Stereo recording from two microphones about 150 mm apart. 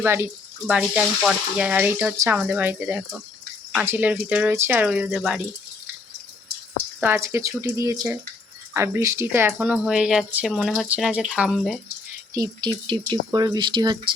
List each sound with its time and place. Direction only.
0.0 s speech: 15° right (ahead or behind)
7.0 s speech: 15° right (ahead or behind)
9.5 s speech: 5° right (ahead or behind)
12.3 s speech: 25° right (ahead or behind)